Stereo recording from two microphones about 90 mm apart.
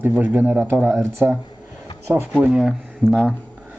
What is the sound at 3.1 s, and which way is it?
Speech, 10° left (ahead or behind).